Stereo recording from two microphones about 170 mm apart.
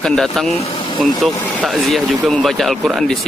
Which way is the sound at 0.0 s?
Centre (ahead or behind).